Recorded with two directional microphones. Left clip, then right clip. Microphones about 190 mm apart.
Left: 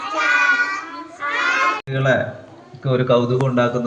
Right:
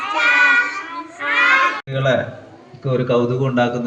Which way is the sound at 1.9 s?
20° right (ahead or behind).